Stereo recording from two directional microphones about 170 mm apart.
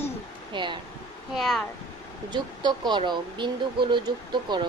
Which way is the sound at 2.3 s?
25° right (ahead or behind).